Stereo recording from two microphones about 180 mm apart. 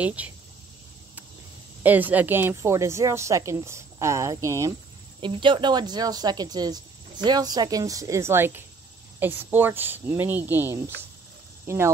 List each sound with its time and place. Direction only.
0.0 s speech: 10° right (ahead or behind)
1.8 s speech: 10° right (ahead or behind)